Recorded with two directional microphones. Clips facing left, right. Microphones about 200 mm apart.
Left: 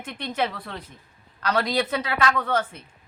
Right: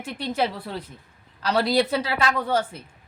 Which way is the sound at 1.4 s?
30° right (ahead or behind).